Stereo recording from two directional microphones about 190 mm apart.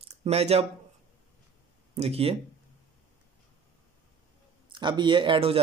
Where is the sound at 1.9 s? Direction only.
30° right (ahead or behind).